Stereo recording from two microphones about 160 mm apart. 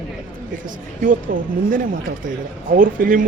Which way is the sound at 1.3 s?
60° right (ahead or behind).